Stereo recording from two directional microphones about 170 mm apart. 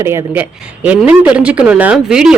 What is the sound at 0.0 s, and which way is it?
Speech, 15° right (ahead or behind).